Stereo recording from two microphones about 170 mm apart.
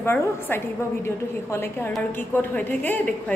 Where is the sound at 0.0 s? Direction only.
15° left (ahead or behind).